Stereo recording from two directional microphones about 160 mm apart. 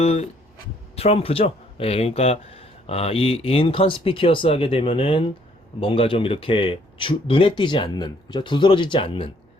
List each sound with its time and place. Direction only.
0.0 s speech: 40° left (ahead or behind)